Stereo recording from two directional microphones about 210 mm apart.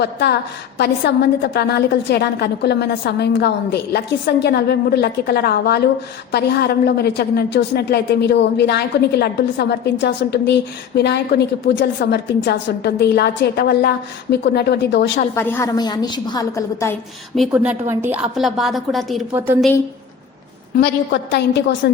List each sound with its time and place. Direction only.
0.0 s a woman's voice: 50° left (ahead or behind)
15.4 s a woman's voice: 15° left (ahead or behind)
17.3 s a woman's voice: 5° right (ahead or behind)
19.3 s a woman's voice: 10° right (ahead or behind)
20.7 s a woman's voice: 50° left (ahead or behind)